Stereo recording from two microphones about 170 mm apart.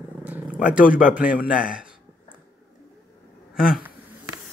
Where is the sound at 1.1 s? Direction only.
10° right (ahead or behind).